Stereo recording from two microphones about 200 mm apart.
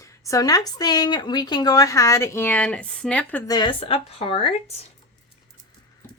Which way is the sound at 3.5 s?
25° left (ahead or behind).